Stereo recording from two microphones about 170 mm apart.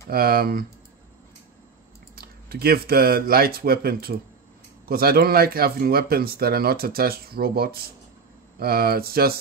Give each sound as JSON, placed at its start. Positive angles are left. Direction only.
{"t": 0.1, "sound": "speech", "side_deg": -60}
{"t": 2.1, "sound": "speech", "side_deg": -65}